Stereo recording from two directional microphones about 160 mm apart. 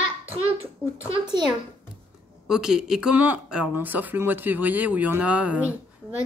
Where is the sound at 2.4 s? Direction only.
5° right (ahead or behind).